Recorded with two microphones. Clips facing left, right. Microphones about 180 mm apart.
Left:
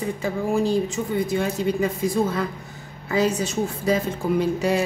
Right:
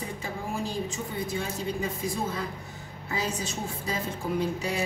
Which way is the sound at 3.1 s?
75° left (ahead or behind).